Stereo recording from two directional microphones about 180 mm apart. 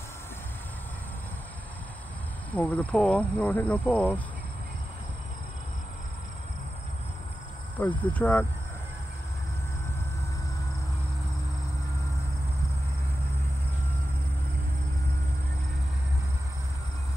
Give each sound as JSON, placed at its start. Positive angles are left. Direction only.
{"t": 2.5, "sound": "speech", "side_deg": 10}
{"t": 7.8, "sound": "speech", "side_deg": 10}